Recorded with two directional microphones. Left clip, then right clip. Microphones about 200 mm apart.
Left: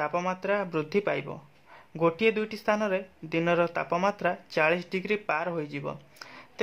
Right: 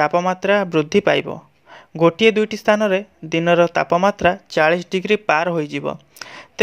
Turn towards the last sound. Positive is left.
turn(degrees=-35)  # may be behind; listen again after turning